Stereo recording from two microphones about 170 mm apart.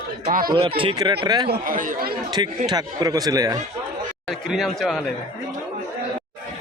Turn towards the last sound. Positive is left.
turn(degrees=0)  # may be behind; listen again after turning